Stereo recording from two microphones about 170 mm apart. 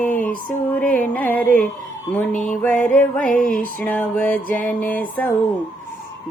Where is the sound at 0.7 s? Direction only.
10° left (ahead or behind).